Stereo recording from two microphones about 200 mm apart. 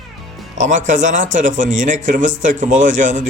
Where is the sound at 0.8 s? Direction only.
40° right (ahead or behind).